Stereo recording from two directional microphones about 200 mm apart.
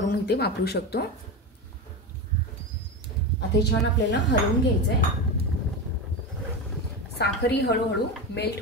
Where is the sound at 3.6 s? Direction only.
60° left (ahead or behind).